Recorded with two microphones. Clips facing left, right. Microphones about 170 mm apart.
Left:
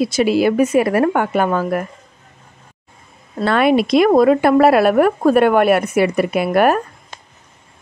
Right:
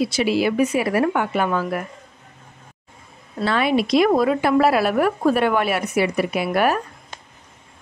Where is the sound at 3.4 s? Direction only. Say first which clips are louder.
Left 5 dB; 55° left (ahead or behind).